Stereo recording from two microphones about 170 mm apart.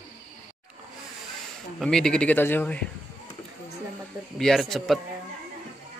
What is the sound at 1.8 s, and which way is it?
A man's voice, 5° left (ahead or behind).